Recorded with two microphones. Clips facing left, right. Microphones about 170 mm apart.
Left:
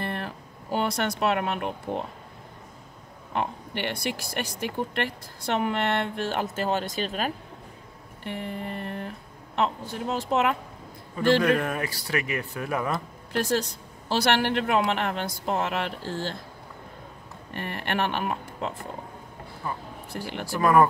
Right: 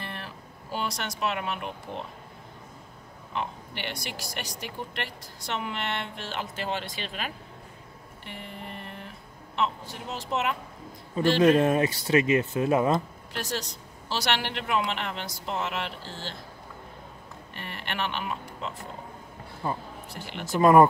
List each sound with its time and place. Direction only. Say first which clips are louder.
0.0 s speech: left 7 dB; 55° left (ahead or behind)
3.3 s speech: left 5 dB; 55° left (ahead or behind)
8.2 s a woman's voice: left 8 dB; 55° left (ahead or behind)
11.3 s speech: right 3 dB; 20° right (ahead or behind)
13.3 s speech: left 8 dB; 55° left (ahead or behind)
17.6 s speech: left 6 dB; 50° left (ahead or behind)
19.6 s speech: right 3 dB; 25° right (ahead or behind)